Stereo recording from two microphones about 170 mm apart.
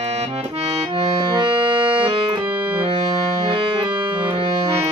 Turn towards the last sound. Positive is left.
turn(degrees=-30)  # may be behind; listen again after turning